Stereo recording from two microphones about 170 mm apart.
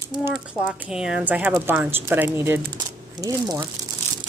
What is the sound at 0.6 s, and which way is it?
Speech, 5° right (ahead or behind).